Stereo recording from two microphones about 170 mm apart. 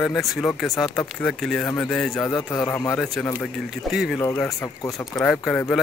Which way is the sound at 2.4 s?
20° left (ahead or behind).